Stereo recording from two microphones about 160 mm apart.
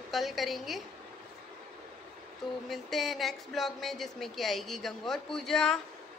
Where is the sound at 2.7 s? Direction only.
Centre (ahead or behind).